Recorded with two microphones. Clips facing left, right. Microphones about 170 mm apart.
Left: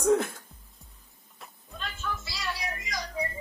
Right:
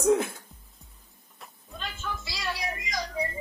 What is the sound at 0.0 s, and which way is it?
Speech, centre (ahead or behind).